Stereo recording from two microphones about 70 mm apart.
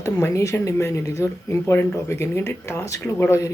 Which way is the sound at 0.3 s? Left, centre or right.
Left.